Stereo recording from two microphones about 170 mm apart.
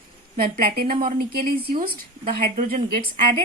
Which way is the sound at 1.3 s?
60° right (ahead or behind).